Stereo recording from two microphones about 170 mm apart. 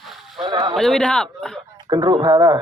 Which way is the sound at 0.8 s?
5° left (ahead or behind).